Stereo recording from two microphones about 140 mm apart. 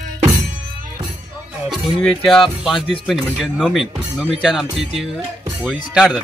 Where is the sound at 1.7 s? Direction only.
5° left (ahead or behind).